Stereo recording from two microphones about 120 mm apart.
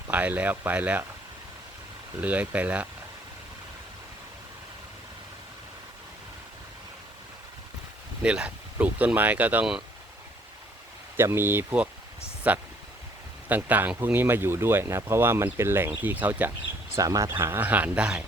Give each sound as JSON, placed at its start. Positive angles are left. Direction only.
{"t": 0.1, "sound": "speech", "side_deg": -15}
{"t": 2.2, "sound": "speech", "side_deg": -15}
{"t": 8.2, "sound": "speech", "side_deg": -10}
{"t": 11.2, "sound": "speech", "side_deg": -20}
{"t": 16.9, "sound": "speech", "side_deg": -25}